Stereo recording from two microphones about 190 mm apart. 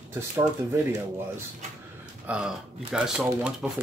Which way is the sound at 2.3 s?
5° right (ahead or behind).